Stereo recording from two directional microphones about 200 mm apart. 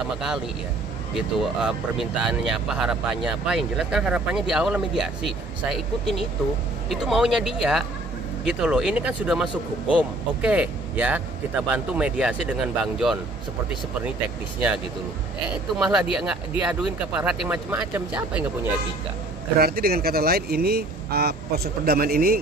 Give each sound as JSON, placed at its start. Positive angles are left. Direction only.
{"t": 1.1, "sound": "speech", "side_deg": -5}
{"t": 15.5, "sound": "speech", "side_deg": -5}
{"t": 19.6, "sound": "speech", "side_deg": -50}